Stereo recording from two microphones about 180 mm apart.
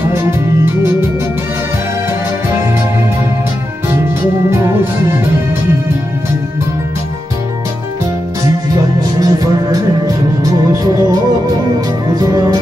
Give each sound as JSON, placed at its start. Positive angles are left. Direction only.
{"t": 9.2, "sound": "music", "side_deg": -20}
{"t": 12.2, "sound": "music", "side_deg": -20}